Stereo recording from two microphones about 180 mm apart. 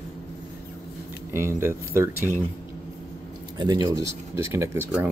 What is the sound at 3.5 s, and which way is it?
Speech, 25° right (ahead or behind).